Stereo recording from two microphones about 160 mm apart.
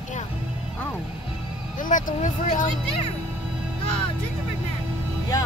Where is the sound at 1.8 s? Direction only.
55° left (ahead or behind).